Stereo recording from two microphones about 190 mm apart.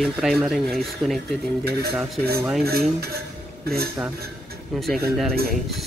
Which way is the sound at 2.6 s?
55° right (ahead or behind).